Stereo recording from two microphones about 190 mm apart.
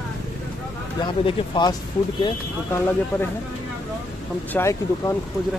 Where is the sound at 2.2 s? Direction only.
15° left (ahead or behind).